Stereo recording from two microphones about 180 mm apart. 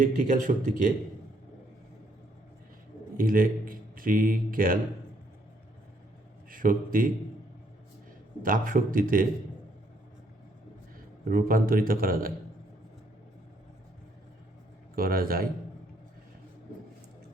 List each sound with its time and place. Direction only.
0.0 s a man's voice: 45° right (ahead or behind)
3.2 s a man's voice: 50° right (ahead or behind)
6.5 s a man's voice: 50° right (ahead or behind)
8.4 s a man's voice: 50° right (ahead or behind)
11.3 s a man's voice: 50° right (ahead or behind)
14.9 s a man's voice: 55° right (ahead or behind)